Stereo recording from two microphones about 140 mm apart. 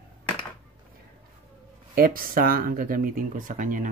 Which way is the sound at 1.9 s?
90° right.